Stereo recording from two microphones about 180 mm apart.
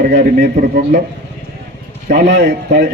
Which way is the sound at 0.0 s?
45° right (ahead or behind).